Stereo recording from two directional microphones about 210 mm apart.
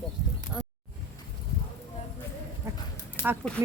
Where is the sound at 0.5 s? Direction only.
5° right (ahead or behind).